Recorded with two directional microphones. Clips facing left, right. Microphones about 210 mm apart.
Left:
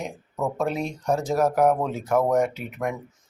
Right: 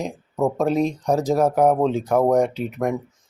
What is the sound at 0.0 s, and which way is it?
Speech, 35° right (ahead or behind).